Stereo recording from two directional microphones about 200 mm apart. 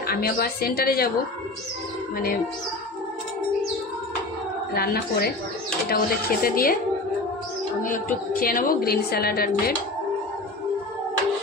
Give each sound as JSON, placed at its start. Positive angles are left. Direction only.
{"t": 0.0, "sound": "a woman's voice", "side_deg": 50}
{"t": 4.7, "sound": "a woman's voice", "side_deg": 50}
{"t": 6.4, "sound": "a woman's voice", "side_deg": 45}
{"t": 7.8, "sound": "a woman's voice", "side_deg": 45}